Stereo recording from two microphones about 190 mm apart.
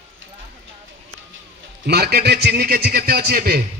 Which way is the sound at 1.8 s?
55° right (ahead or behind).